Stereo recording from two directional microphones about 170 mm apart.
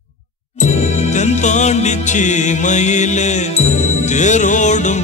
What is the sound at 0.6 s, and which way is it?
Music, 45° left (ahead or behind).